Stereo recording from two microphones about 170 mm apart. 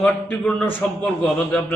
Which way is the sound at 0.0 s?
10° left (ahead or behind).